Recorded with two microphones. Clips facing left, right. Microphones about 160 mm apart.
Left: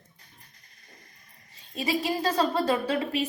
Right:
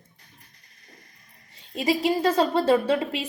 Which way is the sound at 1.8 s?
25° right (ahead or behind).